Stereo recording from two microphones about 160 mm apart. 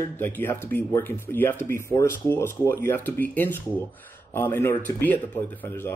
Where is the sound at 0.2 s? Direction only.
10° left (ahead or behind).